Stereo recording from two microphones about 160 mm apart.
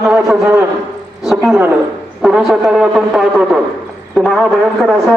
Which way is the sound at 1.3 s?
Centre (ahead or behind).